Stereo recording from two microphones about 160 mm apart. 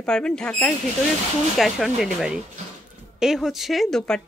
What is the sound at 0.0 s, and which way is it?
A woman's voice, 5° left (ahead or behind).